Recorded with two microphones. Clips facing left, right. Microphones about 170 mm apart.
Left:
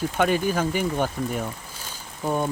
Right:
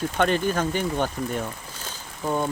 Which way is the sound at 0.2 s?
10° left (ahead or behind).